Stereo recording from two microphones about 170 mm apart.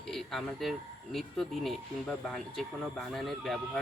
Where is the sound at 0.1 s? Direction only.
Centre (ahead or behind).